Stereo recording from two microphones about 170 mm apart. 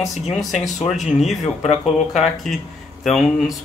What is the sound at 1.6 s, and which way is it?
Speech, 40° left (ahead or behind).